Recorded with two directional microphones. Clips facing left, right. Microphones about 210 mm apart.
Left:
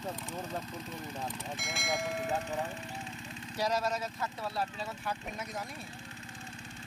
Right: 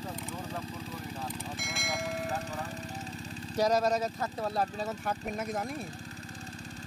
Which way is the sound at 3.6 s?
40° right (ahead or behind).